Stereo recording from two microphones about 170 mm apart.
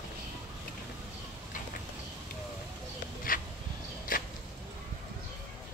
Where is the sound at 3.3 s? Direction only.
55° left (ahead or behind).